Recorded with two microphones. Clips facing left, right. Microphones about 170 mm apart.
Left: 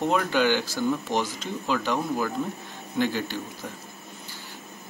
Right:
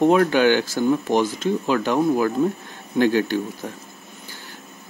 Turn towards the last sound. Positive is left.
turn(degrees=-55)  # may be behind; listen again after turning